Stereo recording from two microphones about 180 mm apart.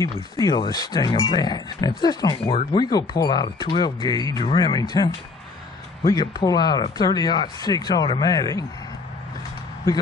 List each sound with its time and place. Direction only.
0.4 s speech: 20° left (ahead or behind)